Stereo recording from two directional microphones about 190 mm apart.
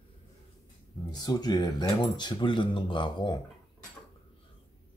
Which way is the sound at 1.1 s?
20° left (ahead or behind).